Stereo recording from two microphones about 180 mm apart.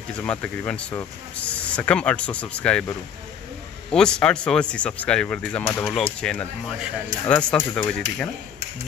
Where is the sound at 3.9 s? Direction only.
5° left (ahead or behind).